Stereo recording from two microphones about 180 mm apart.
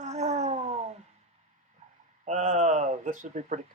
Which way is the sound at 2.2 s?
40° right (ahead or behind).